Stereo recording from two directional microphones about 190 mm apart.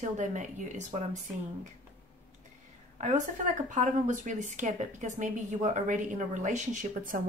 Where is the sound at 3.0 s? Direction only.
40° right (ahead or behind).